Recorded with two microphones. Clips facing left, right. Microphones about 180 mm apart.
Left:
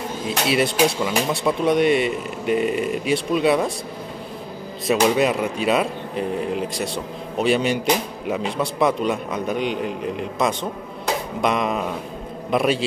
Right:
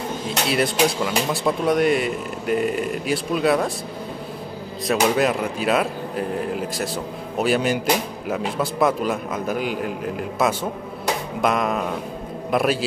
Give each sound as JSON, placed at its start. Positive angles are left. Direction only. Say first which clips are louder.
{"t": 0.5, "sound": "speech", "louder": "left 1 dB", "side_deg": 0}
{"t": 4.8, "sound": "a man's voice", "louder": "left 1 dB", "side_deg": 0}